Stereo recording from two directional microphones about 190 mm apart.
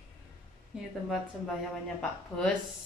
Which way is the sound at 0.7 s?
5° right (ahead or behind).